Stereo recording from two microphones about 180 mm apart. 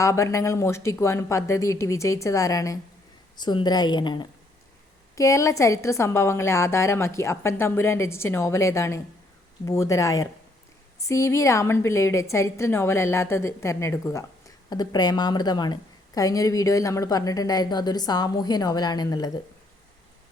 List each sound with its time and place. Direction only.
0.0 s a woman's voice: 15° left (ahead or behind)